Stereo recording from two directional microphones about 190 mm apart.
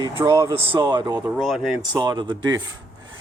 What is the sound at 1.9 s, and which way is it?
Speech, 20° right (ahead or behind).